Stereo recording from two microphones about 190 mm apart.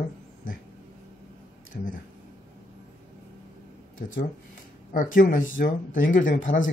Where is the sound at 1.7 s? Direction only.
45° left (ahead or behind).